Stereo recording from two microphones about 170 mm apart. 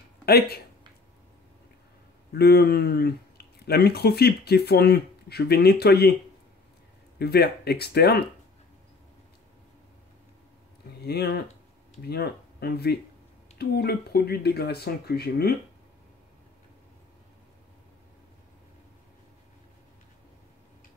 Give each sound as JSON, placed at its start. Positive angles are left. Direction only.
{"t": 0.2, "sound": "speech", "side_deg": 65}
{"t": 2.3, "sound": "speech", "side_deg": 70}
{"t": 7.2, "sound": "speech", "side_deg": 70}
{"t": 11.0, "sound": "speech", "side_deg": 70}